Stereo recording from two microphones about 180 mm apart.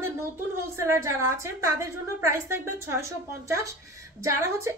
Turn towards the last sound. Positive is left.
turn(degrees=-15)  # may be behind; listen again after turning